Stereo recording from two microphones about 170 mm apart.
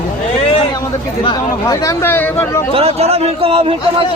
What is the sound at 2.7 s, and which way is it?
A man's voice, 35° right (ahead or behind).